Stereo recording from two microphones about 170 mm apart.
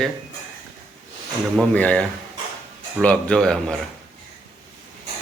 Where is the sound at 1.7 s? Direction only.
5° left (ahead or behind).